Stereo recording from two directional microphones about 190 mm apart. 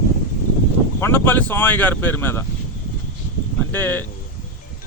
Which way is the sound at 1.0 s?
10° left (ahead or behind).